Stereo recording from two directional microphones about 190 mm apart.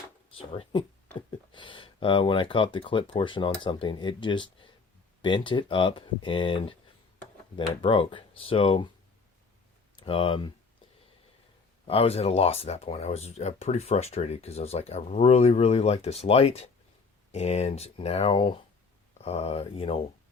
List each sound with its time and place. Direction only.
0.3 s speech: 25° left (ahead or behind)
10.0 s speech: 25° left (ahead or behind)
11.9 s speech: 30° left (ahead or behind)